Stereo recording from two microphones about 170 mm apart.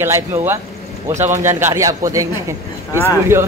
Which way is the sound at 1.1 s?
45° right (ahead or behind).